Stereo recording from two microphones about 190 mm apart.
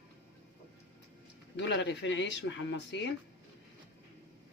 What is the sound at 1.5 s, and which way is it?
Speech, 65° left (ahead or behind).